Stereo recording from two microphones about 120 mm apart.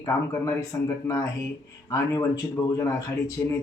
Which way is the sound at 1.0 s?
25° left (ahead or behind).